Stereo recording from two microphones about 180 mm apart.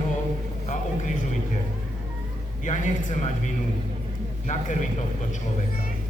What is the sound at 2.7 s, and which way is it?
A man's voice, 40° left (ahead or behind).